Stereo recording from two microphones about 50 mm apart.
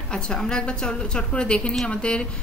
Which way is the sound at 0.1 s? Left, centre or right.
Centre.